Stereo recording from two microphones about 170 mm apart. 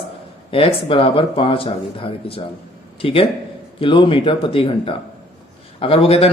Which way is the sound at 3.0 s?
35° left (ahead or behind).